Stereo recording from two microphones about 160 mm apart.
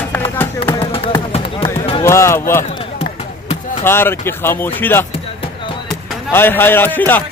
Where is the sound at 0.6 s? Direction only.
35° left (ahead or behind).